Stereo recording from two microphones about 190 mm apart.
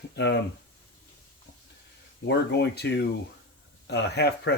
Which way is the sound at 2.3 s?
60° left (ahead or behind).